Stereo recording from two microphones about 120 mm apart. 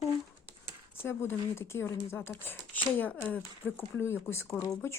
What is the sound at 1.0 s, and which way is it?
Speech, 20° left (ahead or behind).